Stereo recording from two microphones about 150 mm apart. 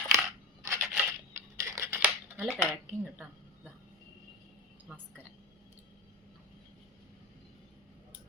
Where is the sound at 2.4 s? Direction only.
Centre (ahead or behind).